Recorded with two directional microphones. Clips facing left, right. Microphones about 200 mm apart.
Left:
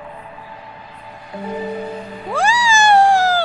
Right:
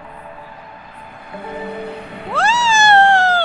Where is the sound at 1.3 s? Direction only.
60° right (ahead or behind).